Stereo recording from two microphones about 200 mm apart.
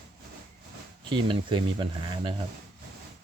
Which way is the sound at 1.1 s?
25° right (ahead or behind).